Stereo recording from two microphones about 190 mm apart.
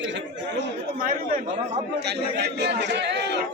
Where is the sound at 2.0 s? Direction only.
60° right (ahead or behind).